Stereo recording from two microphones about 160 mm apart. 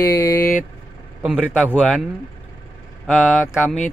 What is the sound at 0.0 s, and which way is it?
Vehicle, 15° left (ahead or behind).